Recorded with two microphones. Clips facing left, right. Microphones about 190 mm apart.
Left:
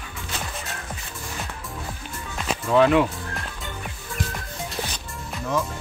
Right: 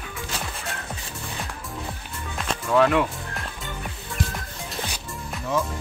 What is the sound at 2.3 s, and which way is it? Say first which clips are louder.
Music: left 1 dB; 5° left (ahead or behind).